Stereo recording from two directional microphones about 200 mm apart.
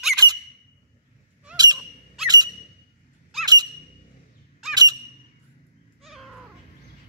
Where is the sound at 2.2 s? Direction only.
20° right (ahead or behind).